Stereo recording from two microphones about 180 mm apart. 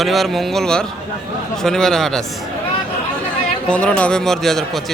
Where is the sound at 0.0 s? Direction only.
Centre (ahead or behind).